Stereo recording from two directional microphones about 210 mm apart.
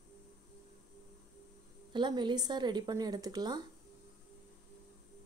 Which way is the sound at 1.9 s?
20° right (ahead or behind).